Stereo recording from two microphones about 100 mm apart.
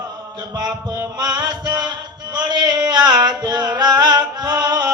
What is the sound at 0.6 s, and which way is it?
Music, 45° right (ahead or behind).